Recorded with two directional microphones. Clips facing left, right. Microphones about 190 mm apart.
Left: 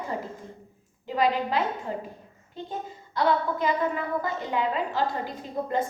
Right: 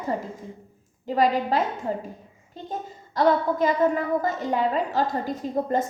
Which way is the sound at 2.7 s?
45° right (ahead or behind).